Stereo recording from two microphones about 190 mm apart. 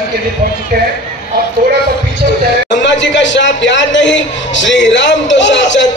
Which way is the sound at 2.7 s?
70° left (ahead or behind).